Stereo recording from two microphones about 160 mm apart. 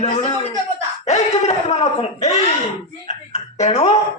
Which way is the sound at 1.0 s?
45° left (ahead or behind).